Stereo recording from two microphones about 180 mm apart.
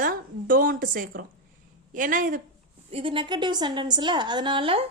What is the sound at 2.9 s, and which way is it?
A woman's voice, 30° right (ahead or behind).